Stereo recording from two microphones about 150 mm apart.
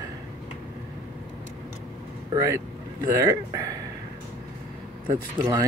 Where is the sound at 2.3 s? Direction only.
25° right (ahead or behind).